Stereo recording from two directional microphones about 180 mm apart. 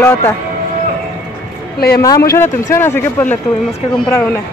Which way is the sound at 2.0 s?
20° left (ahead or behind).